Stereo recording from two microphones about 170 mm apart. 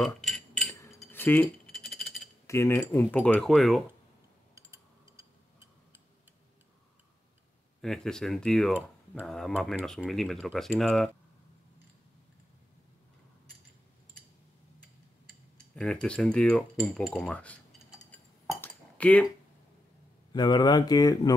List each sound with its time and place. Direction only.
0.0 s a sound: centre (ahead or behind)
2.4 s speech: 15° left (ahead or behind)
4.6 s a sound: 15° right (ahead or behind)
7.8 s speech: 5° left (ahead or behind)
15.7 s speech: 5° left (ahead or behind)
18.5 s dishes: 10° left (ahead or behind)
20.3 s speech: 25° left (ahead or behind)